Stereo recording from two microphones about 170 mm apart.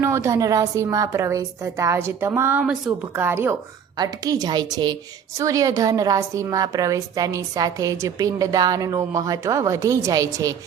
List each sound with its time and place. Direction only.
0.0 s a woman's voice: 15° right (ahead or behind)